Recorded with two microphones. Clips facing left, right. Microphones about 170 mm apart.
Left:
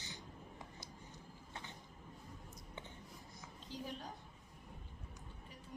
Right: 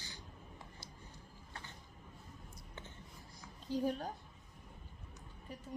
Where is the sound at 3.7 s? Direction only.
40° right (ahead or behind).